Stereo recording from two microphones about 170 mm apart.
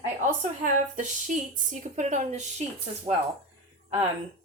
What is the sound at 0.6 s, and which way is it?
A woman's voice, 50° right (ahead or behind).